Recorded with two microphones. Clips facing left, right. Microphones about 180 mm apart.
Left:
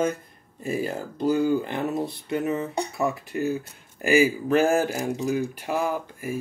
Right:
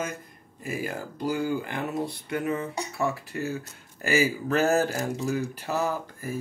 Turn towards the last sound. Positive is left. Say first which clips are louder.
# left 3 dB
turn(degrees=10)  # may be behind; listen again after turning